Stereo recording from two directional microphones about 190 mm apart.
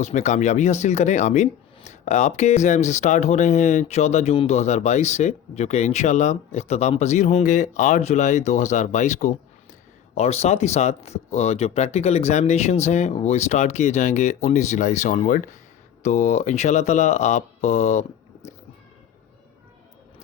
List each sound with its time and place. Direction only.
0.0 s speech: 40° left (ahead or behind)